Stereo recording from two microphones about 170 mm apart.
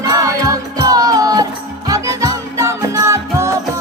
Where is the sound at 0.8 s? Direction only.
20° right (ahead or behind).